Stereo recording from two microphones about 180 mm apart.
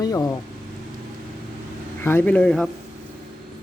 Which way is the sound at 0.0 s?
20° left (ahead or behind).